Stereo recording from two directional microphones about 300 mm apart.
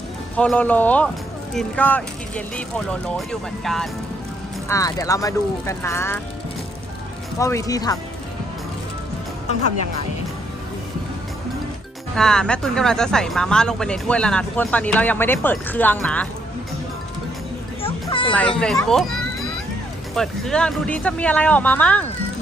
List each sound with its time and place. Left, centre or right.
0.3 s speech: centre
7.3 s speech: centre
12.1 s speech: centre
17.8 s a sound: centre
18.3 s speech: centre